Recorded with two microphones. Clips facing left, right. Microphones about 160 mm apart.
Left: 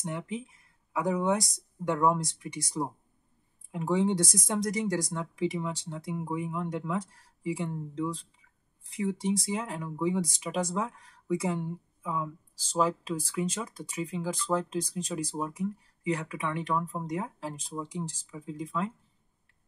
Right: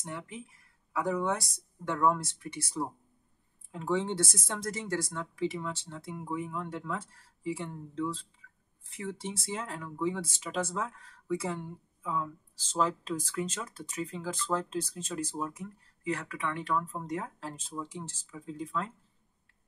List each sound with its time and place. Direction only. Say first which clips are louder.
0.0 s speech: left 6 dB; 20° left (ahead or behind)